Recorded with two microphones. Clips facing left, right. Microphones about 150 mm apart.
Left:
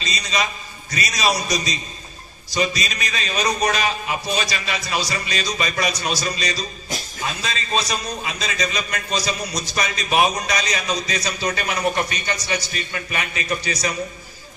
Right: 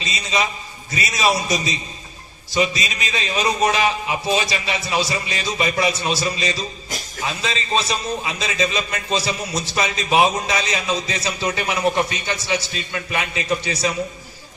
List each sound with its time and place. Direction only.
0.0 s a man's voice: 20° right (ahead or behind)